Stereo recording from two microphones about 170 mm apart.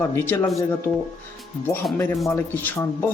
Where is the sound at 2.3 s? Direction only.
10° left (ahead or behind).